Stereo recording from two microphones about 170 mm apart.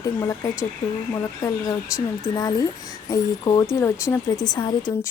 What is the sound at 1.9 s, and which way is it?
Speech, 20° left (ahead or behind).